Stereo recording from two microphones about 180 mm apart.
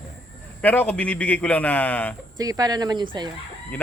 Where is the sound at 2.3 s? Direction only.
20° right (ahead or behind).